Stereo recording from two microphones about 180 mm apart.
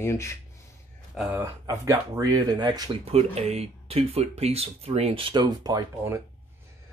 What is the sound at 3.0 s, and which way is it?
Speech, 35° right (ahead or behind).